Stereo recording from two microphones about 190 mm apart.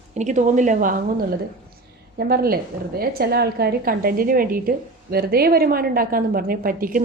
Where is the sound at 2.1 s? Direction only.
55° right (ahead or behind).